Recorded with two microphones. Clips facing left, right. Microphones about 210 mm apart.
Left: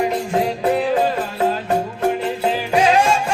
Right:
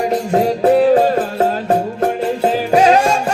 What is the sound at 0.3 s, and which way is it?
Music, 40° right (ahead or behind).